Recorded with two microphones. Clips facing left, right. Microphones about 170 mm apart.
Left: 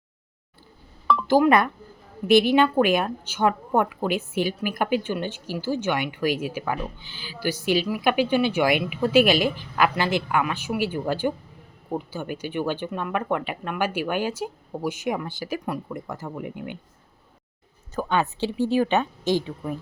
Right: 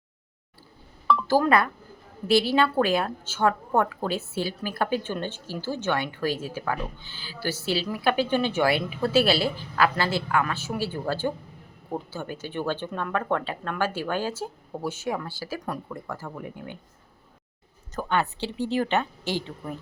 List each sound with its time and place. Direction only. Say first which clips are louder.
1.0 s a sound: left 3 dB; 15° left (ahead or behind)
2.2 s a woman's voice: left 4 dB; 20° left (ahead or behind)
18.1 s a woman's voice: left 2 dB; 15° left (ahead or behind)